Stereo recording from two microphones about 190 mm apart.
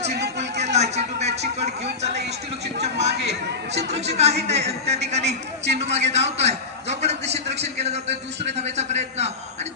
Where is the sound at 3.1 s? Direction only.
65° right (ahead or behind).